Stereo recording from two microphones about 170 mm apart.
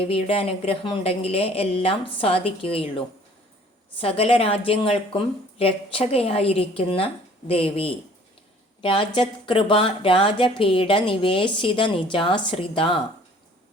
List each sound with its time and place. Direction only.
0.0 s speech: 35° left (ahead or behind)
4.0 s speech: 35° left (ahead or behind)